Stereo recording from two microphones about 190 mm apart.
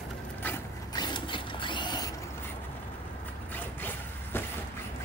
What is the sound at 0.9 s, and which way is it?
Mechanisms, 25° left (ahead or behind).